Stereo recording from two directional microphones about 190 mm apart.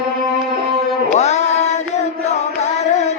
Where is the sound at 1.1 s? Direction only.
35° left (ahead or behind).